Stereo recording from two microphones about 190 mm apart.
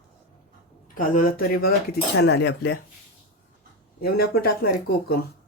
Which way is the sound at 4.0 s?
55° left (ahead or behind).